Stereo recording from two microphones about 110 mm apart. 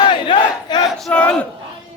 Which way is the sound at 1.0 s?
10° left (ahead or behind).